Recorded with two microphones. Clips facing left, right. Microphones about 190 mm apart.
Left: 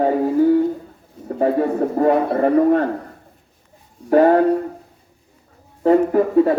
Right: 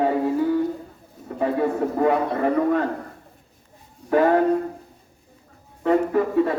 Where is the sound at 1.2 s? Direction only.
40° left (ahead or behind).